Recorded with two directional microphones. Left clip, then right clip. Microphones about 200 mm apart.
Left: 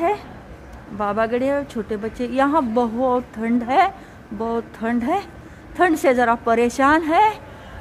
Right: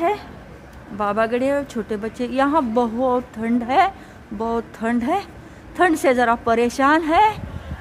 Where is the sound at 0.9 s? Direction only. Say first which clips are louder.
Right 1 dB; 10° right (ahead or behind).